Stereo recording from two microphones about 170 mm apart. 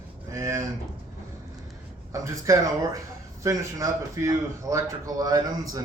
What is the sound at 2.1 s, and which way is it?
A man's voice, 20° right (ahead or behind).